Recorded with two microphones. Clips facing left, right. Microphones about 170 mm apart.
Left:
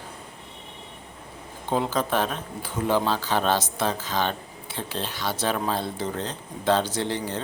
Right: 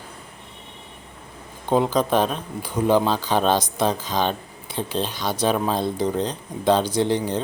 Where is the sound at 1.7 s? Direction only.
15° right (ahead or behind).